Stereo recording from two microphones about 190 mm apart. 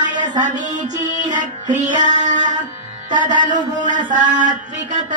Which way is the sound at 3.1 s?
40° right (ahead or behind).